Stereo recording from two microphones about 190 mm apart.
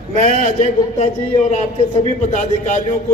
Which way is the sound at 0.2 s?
40° left (ahead or behind).